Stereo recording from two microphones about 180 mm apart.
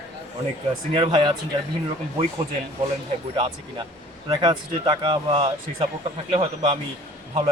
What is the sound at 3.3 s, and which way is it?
Speech, 30° right (ahead or behind).